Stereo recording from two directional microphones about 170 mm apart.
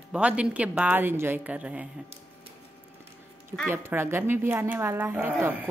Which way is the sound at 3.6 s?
15° right (ahead or behind).